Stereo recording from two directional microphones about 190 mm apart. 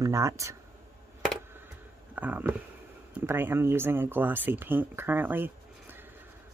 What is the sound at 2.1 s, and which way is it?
Speech, 10° right (ahead or behind).